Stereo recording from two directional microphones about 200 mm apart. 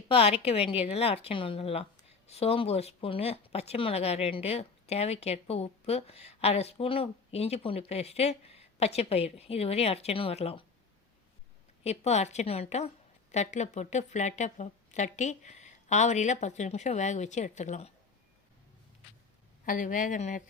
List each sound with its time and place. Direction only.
0.1 s speech: 30° left (ahead or behind)
11.8 s speech: 30° left (ahead or behind)
19.6 s speech: 40° left (ahead or behind)